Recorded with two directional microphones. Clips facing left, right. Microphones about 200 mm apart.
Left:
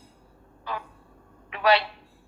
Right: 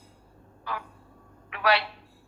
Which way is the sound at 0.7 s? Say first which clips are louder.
Left 1 dB; 20° left (ahead or behind).